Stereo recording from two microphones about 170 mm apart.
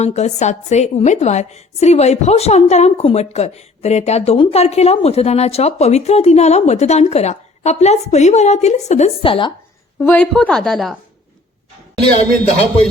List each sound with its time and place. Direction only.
0.0 s a woman's voice: 40° left (ahead or behind)
10.0 s a woman's voice: 10° left (ahead or behind)